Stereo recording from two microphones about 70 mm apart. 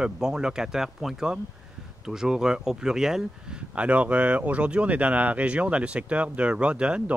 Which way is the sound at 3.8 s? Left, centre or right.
Centre.